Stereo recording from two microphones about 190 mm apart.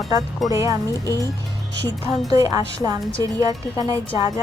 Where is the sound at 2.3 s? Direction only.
20° right (ahead or behind).